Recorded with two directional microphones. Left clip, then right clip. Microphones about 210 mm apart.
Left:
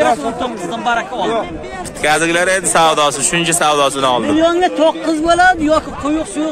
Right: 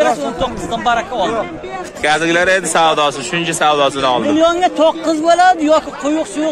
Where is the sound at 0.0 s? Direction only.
20° right (ahead or behind).